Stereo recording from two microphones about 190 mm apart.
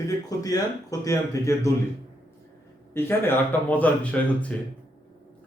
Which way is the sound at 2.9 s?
10° left (ahead or behind).